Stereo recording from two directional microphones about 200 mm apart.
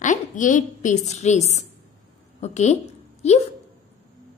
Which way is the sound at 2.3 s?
35° left (ahead or behind).